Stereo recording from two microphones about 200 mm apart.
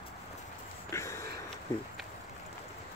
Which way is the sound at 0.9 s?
15° left (ahead or behind).